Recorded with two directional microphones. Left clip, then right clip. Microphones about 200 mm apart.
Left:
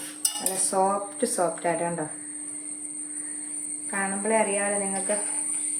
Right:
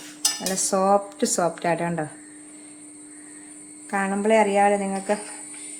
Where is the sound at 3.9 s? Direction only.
55° right (ahead or behind).